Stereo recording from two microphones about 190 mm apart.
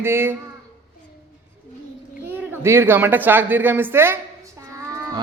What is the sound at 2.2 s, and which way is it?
A woman's voice, 10° right (ahead or behind).